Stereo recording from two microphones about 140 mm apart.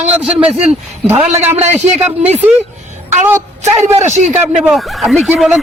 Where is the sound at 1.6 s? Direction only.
50° right (ahead or behind).